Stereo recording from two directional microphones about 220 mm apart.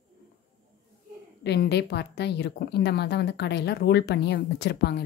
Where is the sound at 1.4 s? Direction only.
50° left (ahead or behind).